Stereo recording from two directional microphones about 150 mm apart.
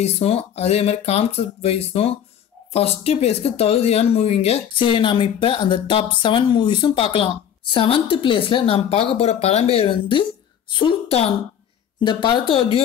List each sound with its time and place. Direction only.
0.0 s speech: 40° left (ahead or behind)
12.0 s speech: 30° left (ahead or behind)